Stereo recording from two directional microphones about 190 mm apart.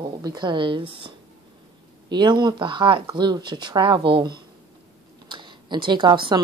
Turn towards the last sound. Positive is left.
turn(degrees=-25)  # may be behind; listen again after turning